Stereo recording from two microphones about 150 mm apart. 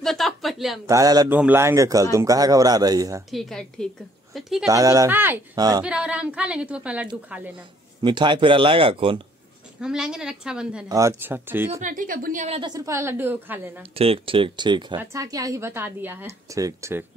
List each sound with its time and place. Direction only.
0.0 s a sound: centre (ahead or behind)
0.8 s speech: 25° right (ahead or behind)
1.3 s speech: 15° right (ahead or behind)
3.3 s a woman's voice: centre (ahead or behind)
4.6 s speech: 25° right (ahead or behind)
5.6 s speech: 25° right (ahead or behind)
5.9 s speech: 5° right (ahead or behind)
8.0 s speech: 30° right (ahead or behind)
9.8 s a woman's voice: 5° right (ahead or behind)
10.9 s speech: 20° right (ahead or behind)
11.7 s speech: 60° right (ahead or behind)
12.4 s speech: 30° right (ahead or behind); by 13.8 s 15° right (ahead or behind)
13.9 s speech: 40° right (ahead or behind); by 17.0 s 20° right (ahead or behind)